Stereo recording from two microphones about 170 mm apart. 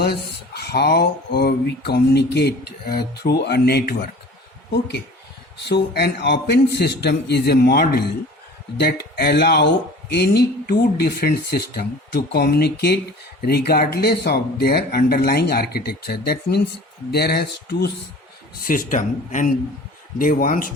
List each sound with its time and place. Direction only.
0.0 s speech: 70° left (ahead or behind)
18.6 s speech: 55° left (ahead or behind)